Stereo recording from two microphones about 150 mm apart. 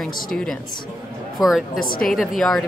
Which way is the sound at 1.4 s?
25° left (ahead or behind).